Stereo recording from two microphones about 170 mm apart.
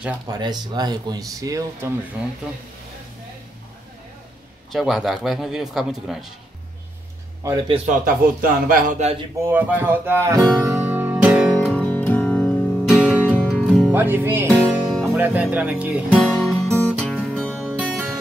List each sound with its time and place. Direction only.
0.3 s speech: 25° right (ahead or behind)
4.7 s speech: centre (ahead or behind)
7.4 s speech: 25° right (ahead or behind)
8.0 s a man's voice: 55° right (ahead or behind)
9.4 s speech: 10° right (ahead or behind)
10.7 s music: 10° right (ahead or behind)
11.7 s music: 10° left (ahead or behind); by 14.5 s 15° right (ahead or behind)
15.1 s speech: 15° right (ahead or behind)
15.4 s music: 5° right (ahead or behind)
17.7 s music: 10° right (ahead or behind)